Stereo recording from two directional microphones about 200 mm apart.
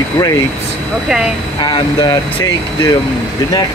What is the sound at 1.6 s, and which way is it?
Speech, 20° left (ahead or behind).